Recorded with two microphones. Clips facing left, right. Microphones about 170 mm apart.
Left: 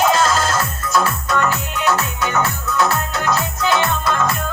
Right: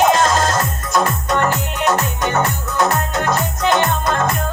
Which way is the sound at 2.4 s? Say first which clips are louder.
Even; 20° right (ahead or behind).